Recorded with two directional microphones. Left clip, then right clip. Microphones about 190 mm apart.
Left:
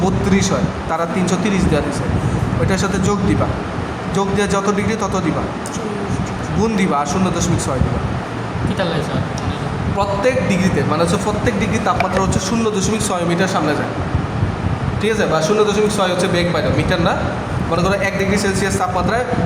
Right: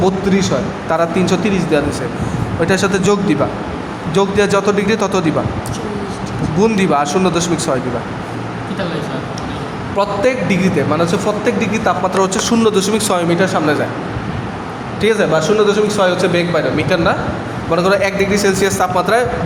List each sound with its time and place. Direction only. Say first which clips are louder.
0.0 s a man's voice: right 3 dB; 20° right (ahead or behind)
6.6 s speech: right 4 dB; 35° right (ahead or behind)
10.0 s a man's voice: right 2 dB; 25° right (ahead or behind)
15.0 s a man's voice: right 3 dB; 30° right (ahead or behind)